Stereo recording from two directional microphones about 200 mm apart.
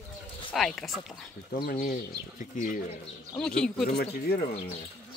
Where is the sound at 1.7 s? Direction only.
40° left (ahead or behind).